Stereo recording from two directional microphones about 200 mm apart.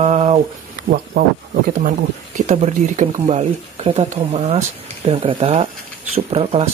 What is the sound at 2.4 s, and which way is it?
Speech, 35° right (ahead or behind).